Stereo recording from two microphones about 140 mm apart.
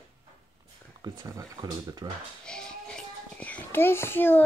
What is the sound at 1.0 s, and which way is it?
Speech, 25° right (ahead or behind).